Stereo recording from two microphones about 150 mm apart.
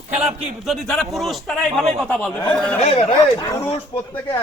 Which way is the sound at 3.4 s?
20° left (ahead or behind).